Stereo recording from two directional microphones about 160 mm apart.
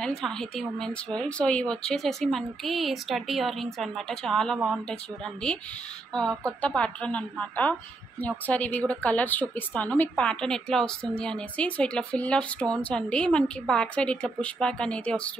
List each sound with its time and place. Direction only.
0.0 s a woman's voice: 5° left (ahead or behind)